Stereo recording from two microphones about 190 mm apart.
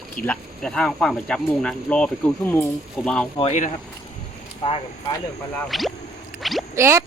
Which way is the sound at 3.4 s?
35° left (ahead or behind).